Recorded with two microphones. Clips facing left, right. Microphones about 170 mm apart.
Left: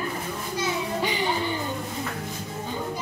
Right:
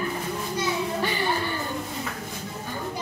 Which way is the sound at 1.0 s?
15° left (ahead or behind).